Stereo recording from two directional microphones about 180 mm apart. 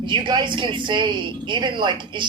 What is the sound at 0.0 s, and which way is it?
Speech, 25° right (ahead or behind).